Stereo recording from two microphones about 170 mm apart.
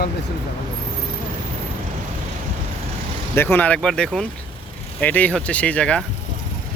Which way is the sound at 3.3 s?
10° left (ahead or behind).